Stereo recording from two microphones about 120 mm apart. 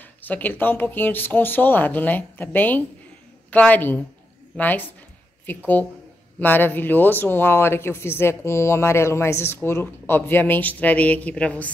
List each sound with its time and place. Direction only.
0.2 s a woman's voice: 15° left (ahead or behind)